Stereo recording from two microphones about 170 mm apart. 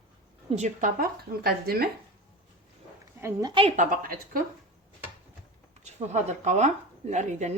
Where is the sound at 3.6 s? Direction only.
50° right (ahead or behind).